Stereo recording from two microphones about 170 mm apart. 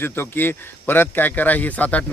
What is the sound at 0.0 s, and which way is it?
Speech, 10° left (ahead or behind).